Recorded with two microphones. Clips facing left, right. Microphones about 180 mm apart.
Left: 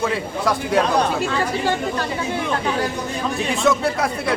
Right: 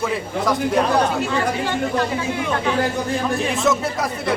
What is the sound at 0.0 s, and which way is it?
Speech, centre (ahead or behind).